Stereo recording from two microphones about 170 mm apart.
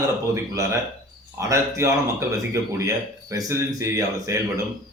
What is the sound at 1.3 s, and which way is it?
A man's voice, 15° right (ahead or behind).